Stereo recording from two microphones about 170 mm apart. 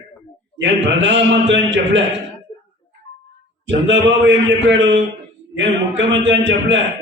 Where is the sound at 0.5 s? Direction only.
90° right.